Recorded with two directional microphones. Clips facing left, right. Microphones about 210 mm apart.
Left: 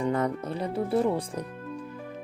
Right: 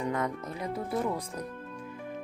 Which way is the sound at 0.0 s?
30° left (ahead or behind).